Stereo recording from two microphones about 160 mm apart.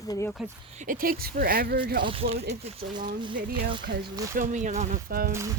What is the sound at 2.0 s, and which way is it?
Speech, 35° right (ahead or behind).